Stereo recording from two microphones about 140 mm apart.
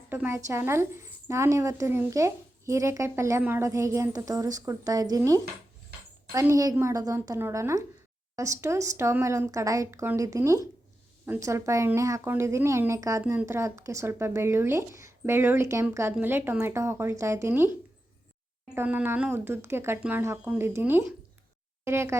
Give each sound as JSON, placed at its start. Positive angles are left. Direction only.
{"t": 0.1, "sound": "a woman's voice", "side_deg": -15}
{"t": 6.4, "sound": "a woman's voice", "side_deg": -25}
{"t": 18.7, "sound": "a woman's voice", "side_deg": -15}